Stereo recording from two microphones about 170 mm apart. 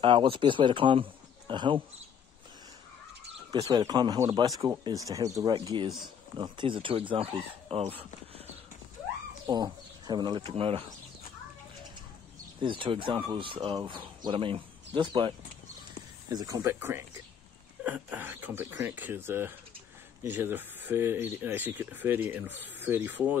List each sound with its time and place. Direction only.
0.0 s speech: 30° right (ahead or behind)
3.5 s speech: 25° right (ahead or behind)
9.5 s speech: 25° right (ahead or behind)
12.5 s speech: 30° right (ahead or behind); by 23.3 s 10° right (ahead or behind)